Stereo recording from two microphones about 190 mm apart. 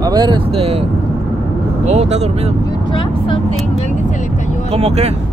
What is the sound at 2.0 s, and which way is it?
Speech, 35° right (ahead or behind).